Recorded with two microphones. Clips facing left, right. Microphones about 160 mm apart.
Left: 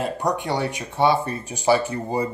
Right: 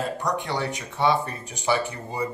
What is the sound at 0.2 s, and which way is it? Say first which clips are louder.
Speech: left 3 dB; 25° left (ahead or behind).